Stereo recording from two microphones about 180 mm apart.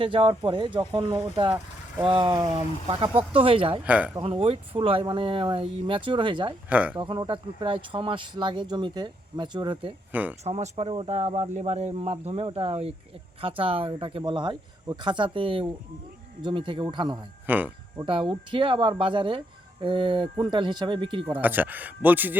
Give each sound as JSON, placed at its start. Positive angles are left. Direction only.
{"t": 0.0, "sound": "speech", "side_deg": -30}
{"t": 3.8, "sound": "speech", "side_deg": -10}
{"t": 4.2, "sound": "speech", "side_deg": -30}
{"t": 6.7, "sound": "speech", "side_deg": -10}
{"t": 6.9, "sound": "speech", "side_deg": -25}
{"t": 10.1, "sound": "speech", "side_deg": -10}
{"t": 10.4, "sound": "speech", "side_deg": -35}
{"t": 17.4, "sound": "speech", "side_deg": -10}
{"t": 18.0, "sound": "speech", "side_deg": -30}
{"t": 21.4, "sound": "speech", "side_deg": -10}